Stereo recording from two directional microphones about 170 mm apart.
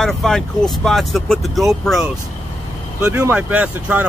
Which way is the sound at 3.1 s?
10° right (ahead or behind).